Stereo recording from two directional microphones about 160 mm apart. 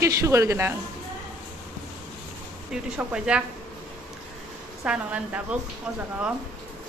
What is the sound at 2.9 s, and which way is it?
Speech, 5° right (ahead or behind).